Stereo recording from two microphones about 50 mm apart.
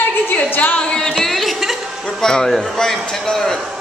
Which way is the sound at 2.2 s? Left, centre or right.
Centre.